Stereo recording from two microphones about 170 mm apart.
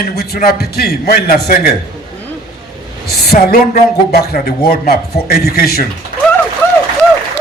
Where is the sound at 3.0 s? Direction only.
65° left (ahead or behind).